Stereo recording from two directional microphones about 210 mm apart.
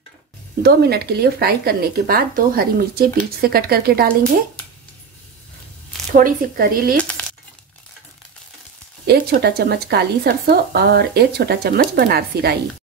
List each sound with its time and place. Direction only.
0.6 s speech: 50° right (ahead or behind)
6.1 s speech: 40° right (ahead or behind)
7.2 s crumpling: 10° left (ahead or behind)
9.0 s speech: 50° right (ahead or behind)